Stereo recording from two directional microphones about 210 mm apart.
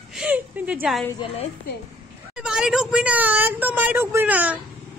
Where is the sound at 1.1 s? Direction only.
25° left (ahead or behind).